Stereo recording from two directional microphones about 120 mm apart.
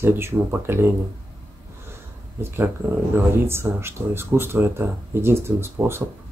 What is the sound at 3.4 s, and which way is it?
Speech, 20° right (ahead or behind).